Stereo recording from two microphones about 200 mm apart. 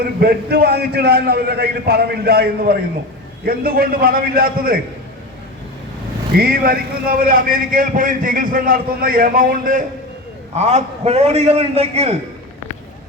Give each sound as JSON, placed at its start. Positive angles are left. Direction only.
{"t": 0.0, "sound": "a man's voice", "side_deg": -50}
{"t": 6.3, "sound": "a man's voice", "side_deg": -50}
{"t": 10.5, "sound": "a man's voice", "side_deg": -35}